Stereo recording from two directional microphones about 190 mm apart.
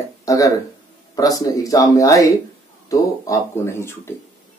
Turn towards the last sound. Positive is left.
turn(degrees=15)  # may be behind; listen again after turning